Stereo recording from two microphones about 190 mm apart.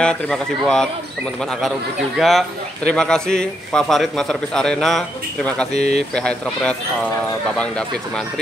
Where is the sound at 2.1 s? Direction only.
Centre (ahead or behind).